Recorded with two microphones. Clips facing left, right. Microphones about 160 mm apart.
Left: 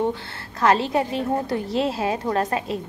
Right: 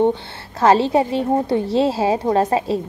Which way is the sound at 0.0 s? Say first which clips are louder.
Right 7 dB; 25° right (ahead or behind).